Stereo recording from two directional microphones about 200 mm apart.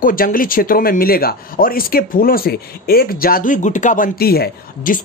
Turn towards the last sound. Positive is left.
turn(degrees=45)  # may be behind; listen again after turning